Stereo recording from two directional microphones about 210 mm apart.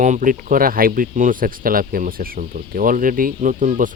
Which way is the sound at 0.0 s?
35° right (ahead or behind).